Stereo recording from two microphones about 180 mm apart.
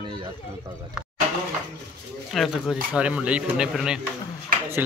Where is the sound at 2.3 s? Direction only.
Centre (ahead or behind).